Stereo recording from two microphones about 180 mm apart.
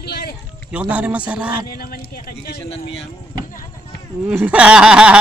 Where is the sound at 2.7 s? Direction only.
35° left (ahead or behind).